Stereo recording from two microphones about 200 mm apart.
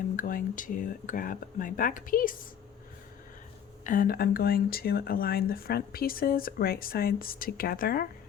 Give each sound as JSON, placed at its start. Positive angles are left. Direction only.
{"t": 0.2, "sound": "speech", "side_deg": 40}
{"t": 3.8, "sound": "speech", "side_deg": 45}